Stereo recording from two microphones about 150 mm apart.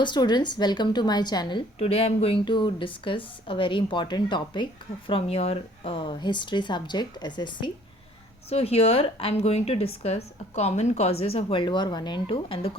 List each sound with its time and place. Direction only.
0.0 s a woman's voice: 30° left (ahead or behind)
8.4 s a woman's voice: 40° left (ahead or behind)